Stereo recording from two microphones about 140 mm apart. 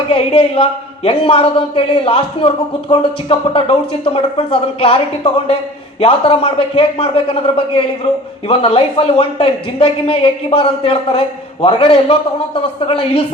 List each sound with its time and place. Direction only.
0.1 s speech: 45° left (ahead or behind)